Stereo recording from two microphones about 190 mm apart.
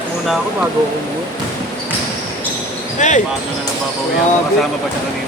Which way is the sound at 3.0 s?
40° left (ahead or behind).